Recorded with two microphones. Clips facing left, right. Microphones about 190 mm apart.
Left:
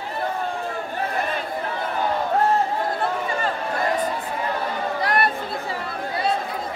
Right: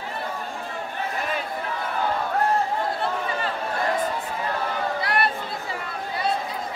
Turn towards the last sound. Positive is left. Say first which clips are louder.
# left 2 dB
turn(degrees=45)  # may be behind; listen again after turning